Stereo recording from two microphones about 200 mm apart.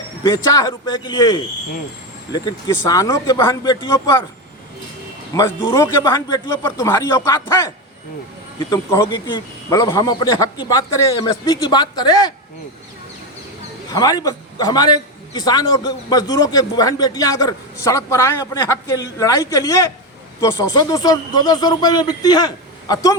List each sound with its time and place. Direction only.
0.2 s a man's voice: 15° left (ahead or behind)
2.8 s a man's voice: 15° left (ahead or behind)
5.3 s a man's voice: 15° left (ahead or behind)
13.9 s a man's voice: 20° left (ahead or behind)